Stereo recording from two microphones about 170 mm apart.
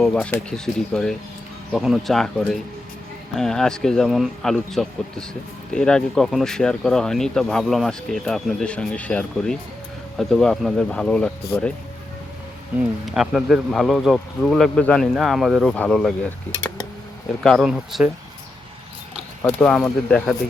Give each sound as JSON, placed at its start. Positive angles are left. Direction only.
{"t": 0.0, "sound": "speech", "side_deg": 5}
{"t": 13.1, "sound": "speech", "side_deg": 0}
{"t": 19.4, "sound": "speech", "side_deg": 10}